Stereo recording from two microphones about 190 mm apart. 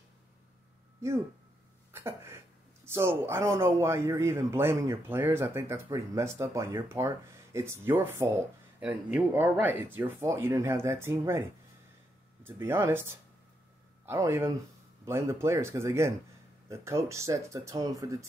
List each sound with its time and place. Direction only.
1.9 s throat clearing: 15° right (ahead or behind)
3.0 s a man's voice: 15° right (ahead or behind)
12.4 s a man's voice: 10° right (ahead or behind)